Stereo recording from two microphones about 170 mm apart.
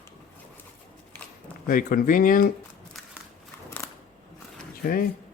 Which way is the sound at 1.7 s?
55° left (ahead or behind).